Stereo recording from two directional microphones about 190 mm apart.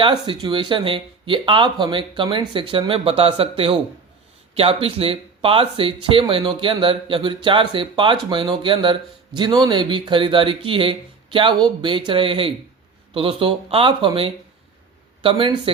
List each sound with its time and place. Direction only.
0.0 s speech: 25° right (ahead or behind)